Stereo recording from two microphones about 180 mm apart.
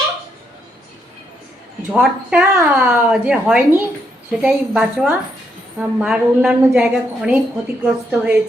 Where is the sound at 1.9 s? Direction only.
10° right (ahead or behind).